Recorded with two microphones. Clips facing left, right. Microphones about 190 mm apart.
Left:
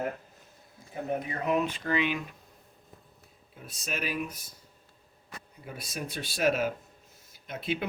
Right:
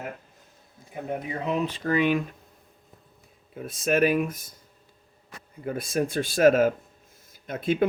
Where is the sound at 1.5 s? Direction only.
35° right (ahead or behind).